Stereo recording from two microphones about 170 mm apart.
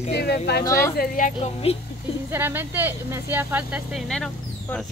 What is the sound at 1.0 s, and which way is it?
Speech, 55° left (ahead or behind).